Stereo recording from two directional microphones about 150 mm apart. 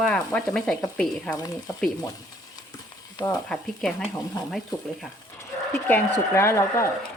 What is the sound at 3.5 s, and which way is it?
Sizzle, 5° left (ahead or behind).